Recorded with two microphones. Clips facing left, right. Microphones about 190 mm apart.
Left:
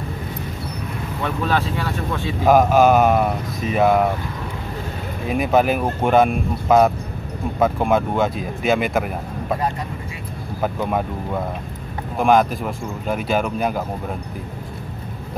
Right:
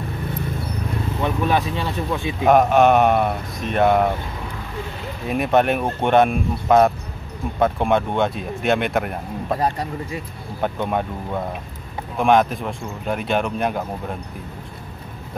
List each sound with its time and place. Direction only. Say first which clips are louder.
1.2 s speech: right 1 dB; 15° right (ahead or behind)
2.4 s speech: left 1 dB; centre (ahead or behind)
5.2 s speech: left 1 dB; centre (ahead or behind)
10.6 s speech: left 1 dB; centre (ahead or behind)